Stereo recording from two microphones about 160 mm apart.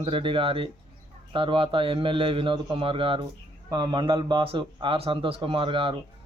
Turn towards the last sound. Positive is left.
turn(degrees=-30)  # may be behind; listen again after turning